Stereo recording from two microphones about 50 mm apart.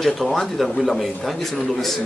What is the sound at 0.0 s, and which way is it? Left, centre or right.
Speech, centre.